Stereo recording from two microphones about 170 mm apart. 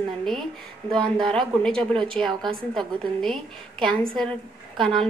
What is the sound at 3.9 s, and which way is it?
Speech, 30° right (ahead or behind).